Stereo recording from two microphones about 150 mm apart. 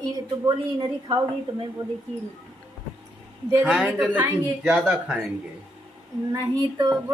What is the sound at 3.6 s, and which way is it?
Speech, 5° right (ahead or behind).